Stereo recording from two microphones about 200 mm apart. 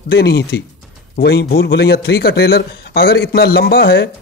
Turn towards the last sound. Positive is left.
turn(degrees=50)  # may be behind; listen again after turning